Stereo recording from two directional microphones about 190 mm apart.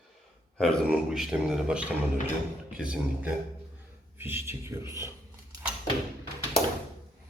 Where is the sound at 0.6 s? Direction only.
Centre (ahead or behind).